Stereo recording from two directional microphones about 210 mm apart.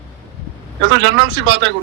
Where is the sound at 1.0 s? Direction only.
65° right (ahead or behind).